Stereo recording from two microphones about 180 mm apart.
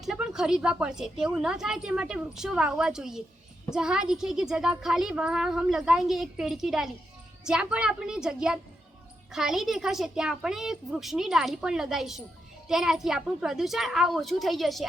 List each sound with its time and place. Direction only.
0.0 s a woman's voice: centre (ahead or behind)